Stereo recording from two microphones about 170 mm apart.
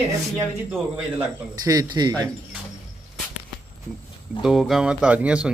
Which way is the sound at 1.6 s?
20° right (ahead or behind).